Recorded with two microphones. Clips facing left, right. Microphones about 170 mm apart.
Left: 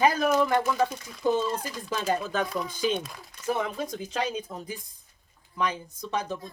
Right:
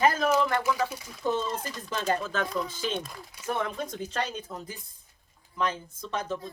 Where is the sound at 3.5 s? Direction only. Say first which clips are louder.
Left 2 dB; 5° left (ahead or behind).